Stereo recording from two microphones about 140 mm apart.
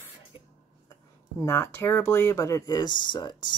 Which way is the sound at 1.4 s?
20° left (ahead or behind).